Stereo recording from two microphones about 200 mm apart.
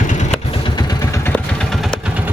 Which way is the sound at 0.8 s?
15° left (ahead or behind).